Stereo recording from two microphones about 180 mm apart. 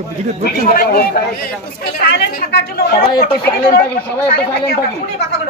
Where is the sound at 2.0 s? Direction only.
65° left (ahead or behind).